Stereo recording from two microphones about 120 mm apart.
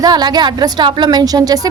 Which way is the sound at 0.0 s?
35° right (ahead or behind).